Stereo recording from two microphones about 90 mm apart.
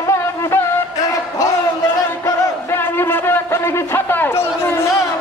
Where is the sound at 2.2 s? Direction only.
25° left (ahead or behind).